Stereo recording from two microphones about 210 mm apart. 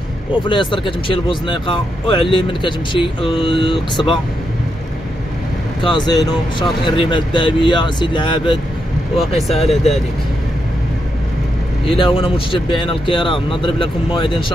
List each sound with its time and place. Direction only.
0.3 s speech: 25° left (ahead or behind)
5.8 s speech: 20° left (ahead or behind)
9.2 s speech: centre (ahead or behind)
11.8 s speech: 25° left (ahead or behind)